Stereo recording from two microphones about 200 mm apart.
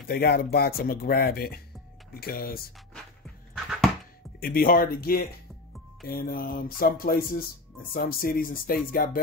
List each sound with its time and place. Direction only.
0.1 s speech: 50° left (ahead or behind)
4.4 s speech: 45° left (ahead or behind)